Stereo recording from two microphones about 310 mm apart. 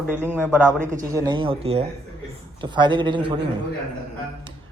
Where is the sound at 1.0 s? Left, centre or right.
Centre.